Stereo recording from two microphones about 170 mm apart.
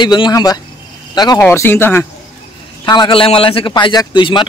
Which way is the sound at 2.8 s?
25° left (ahead or behind).